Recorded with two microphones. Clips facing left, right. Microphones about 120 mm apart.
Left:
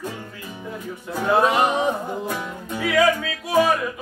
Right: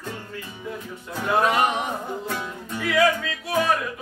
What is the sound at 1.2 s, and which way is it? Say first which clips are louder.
Male singing: left 2 dB; 35° left (ahead or behind).